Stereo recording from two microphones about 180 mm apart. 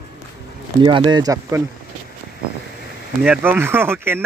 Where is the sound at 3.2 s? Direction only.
10° right (ahead or behind).